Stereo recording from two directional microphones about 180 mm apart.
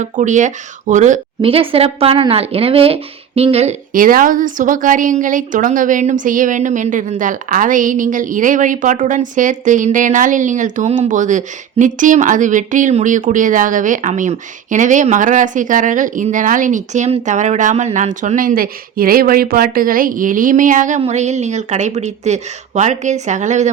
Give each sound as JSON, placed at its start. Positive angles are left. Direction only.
{"t": 0.0, "sound": "speech", "side_deg": -45}
{"t": 1.4, "sound": "speech", "side_deg": -30}